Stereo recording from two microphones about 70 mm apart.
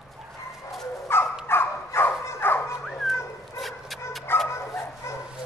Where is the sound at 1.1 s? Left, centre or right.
Left.